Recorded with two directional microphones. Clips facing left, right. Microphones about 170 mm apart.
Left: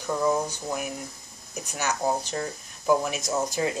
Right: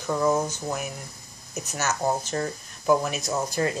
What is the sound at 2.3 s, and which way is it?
Speech, centre (ahead or behind).